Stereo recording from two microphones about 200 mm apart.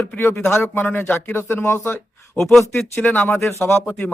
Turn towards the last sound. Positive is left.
turn(degrees=5)  # may be behind; listen again after turning